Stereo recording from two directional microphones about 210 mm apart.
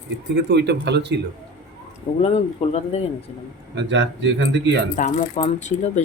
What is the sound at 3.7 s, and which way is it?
A woman's voice, 60° right (ahead or behind).